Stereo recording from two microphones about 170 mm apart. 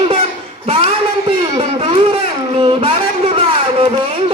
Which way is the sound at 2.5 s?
30° right (ahead or behind).